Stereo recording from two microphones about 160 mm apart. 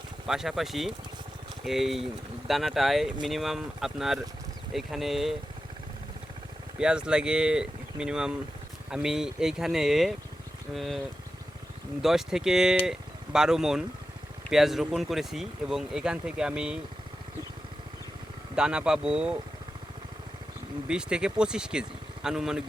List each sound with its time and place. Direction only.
0.3 s speech: centre (ahead or behind)
6.7 s speech: 5° right (ahead or behind)
12.0 s speech: 5° right (ahead or behind)
18.5 s speech: 5° right (ahead or behind)
20.8 s speech: 5° right (ahead or behind)